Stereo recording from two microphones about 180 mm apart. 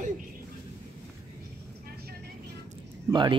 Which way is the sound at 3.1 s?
25° right (ahead or behind).